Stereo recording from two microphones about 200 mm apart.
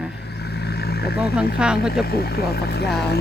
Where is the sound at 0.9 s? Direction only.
55° left (ahead or behind).